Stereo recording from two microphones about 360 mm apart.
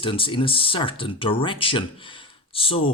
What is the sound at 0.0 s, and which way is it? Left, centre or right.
Speech, centre.